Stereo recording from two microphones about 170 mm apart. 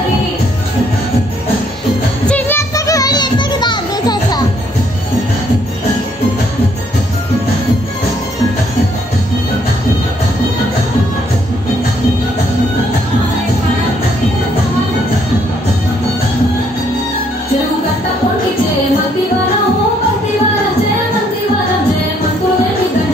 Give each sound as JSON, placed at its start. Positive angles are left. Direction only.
{"t": 2.2, "sound": "music", "side_deg": 10}